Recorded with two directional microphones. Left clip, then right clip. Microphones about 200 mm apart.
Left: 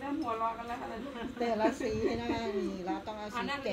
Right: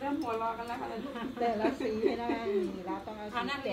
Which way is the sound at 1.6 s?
60° left (ahead or behind).